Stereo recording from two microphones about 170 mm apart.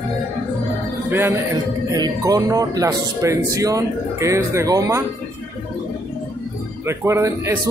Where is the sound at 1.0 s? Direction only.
15° right (ahead or behind).